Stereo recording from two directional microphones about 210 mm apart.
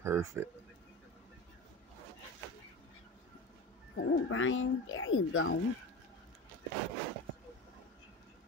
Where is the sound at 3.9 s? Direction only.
70° left (ahead or behind).